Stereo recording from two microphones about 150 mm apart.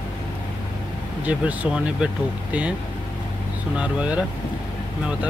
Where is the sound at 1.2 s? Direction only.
10° right (ahead or behind).